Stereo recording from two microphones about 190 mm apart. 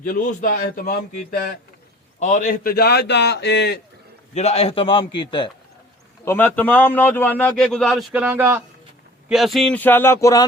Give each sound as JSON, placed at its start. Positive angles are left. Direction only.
{"t": 0.0, "sound": "a man's voice", "side_deg": 45}
{"t": 2.1, "sound": "a man's voice", "side_deg": 40}
{"t": 4.4, "sound": "a man's voice", "side_deg": 35}
{"t": 6.2, "sound": "a man's voice", "side_deg": 10}
{"t": 9.3, "sound": "a man's voice", "side_deg": 0}